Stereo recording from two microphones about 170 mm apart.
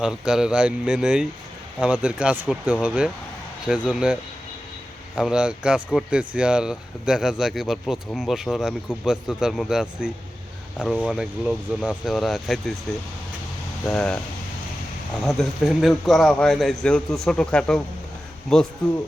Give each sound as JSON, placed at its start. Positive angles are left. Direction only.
{"t": 0.0, "sound": "speech", "side_deg": -5}
{"t": 13.8, "sound": "speech", "side_deg": 5}
{"t": 15.2, "sound": "speech", "side_deg": 0}